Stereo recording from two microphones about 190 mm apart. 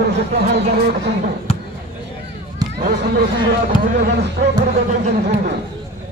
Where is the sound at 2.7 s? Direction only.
55° right (ahead or behind).